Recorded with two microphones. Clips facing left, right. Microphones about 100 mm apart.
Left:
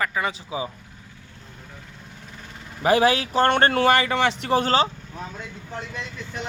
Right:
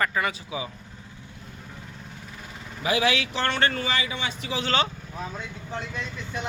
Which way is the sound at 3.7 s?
70° left (ahead or behind).